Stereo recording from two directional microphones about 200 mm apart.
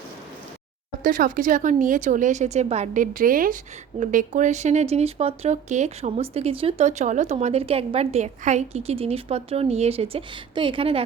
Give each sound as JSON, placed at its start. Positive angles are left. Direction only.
{"t": 1.0, "sound": "speech", "side_deg": -45}